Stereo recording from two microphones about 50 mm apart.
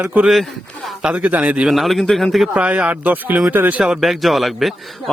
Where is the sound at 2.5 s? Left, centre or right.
Right.